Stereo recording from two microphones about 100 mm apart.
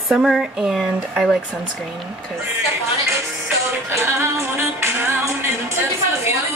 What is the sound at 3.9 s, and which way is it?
Music, 25° right (ahead or behind).